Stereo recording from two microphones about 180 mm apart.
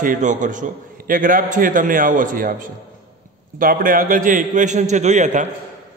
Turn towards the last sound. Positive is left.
turn(degrees=-40)  # may be behind; listen again after turning